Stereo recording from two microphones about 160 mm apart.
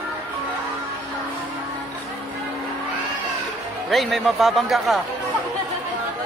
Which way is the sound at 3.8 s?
Centre (ahead or behind).